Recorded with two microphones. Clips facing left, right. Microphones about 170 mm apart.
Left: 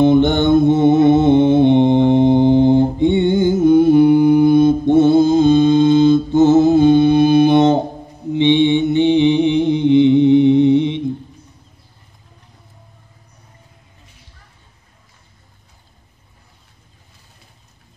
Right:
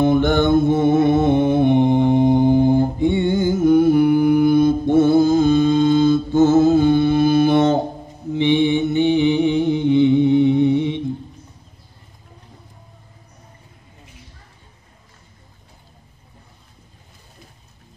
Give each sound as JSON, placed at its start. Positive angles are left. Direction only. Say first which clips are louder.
{"t": 0.0, "sound": "mantra", "louder": "left 3 dB", "side_deg": 20}